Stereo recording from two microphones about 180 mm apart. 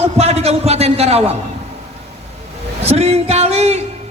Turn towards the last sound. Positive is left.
turn(degrees=-35)  # may be behind; listen again after turning